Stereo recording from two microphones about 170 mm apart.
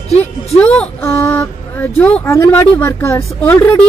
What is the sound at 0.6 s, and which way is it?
Speech, 10° left (ahead or behind).